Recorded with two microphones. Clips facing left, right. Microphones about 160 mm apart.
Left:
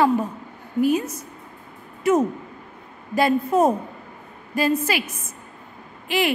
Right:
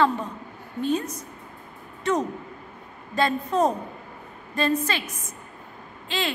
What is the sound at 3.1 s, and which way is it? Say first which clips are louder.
A woman's voice: left 4 dB; 10° left (ahead or behind).